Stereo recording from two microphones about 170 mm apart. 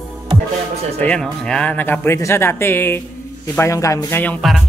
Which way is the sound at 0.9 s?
5° left (ahead or behind).